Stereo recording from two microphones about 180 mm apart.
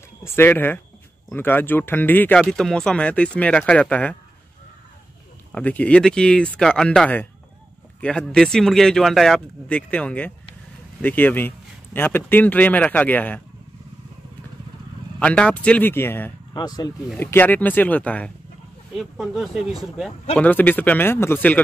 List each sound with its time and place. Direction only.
0.2 s speech: 10° left (ahead or behind)
5.5 s speech: 10° left (ahead or behind)
15.1 s speech: 5° left (ahead or behind)